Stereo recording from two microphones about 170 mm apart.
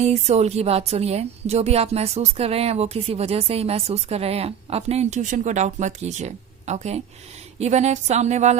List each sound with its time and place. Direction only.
0.0 s speech: 40° right (ahead or behind)